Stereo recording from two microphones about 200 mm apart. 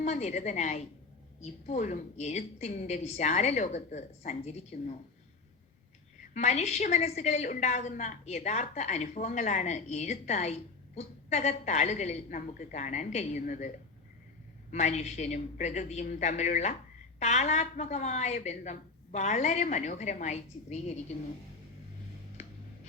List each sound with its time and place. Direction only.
0.0 s a woman's voice: 35° left (ahead or behind)
6.3 s a woman's voice: 35° left (ahead or behind)
14.7 s a woman's voice: 35° left (ahead or behind)